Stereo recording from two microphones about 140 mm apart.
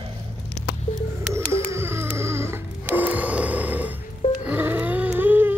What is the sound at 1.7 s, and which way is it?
Music, 20° right (ahead or behind).